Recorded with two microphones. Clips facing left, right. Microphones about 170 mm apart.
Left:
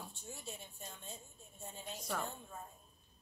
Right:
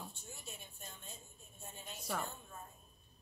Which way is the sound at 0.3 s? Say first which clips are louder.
Left 4 dB; 30° left (ahead or behind).